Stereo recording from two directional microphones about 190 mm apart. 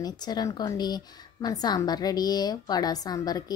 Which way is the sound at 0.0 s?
20° left (ahead or behind).